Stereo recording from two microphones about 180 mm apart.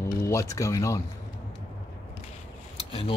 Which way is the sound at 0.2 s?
15° left (ahead or behind).